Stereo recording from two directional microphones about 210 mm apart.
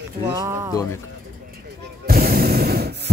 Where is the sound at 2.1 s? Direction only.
45° right (ahead or behind).